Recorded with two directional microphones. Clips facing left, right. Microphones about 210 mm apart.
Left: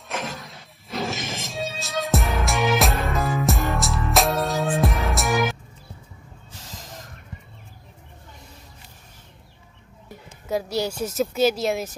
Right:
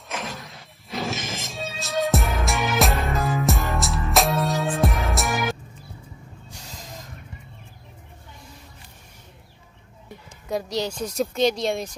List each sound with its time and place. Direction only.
0.1 s music: centre (ahead or behind)
10.0 s a woman's voice: 5° left (ahead or behind)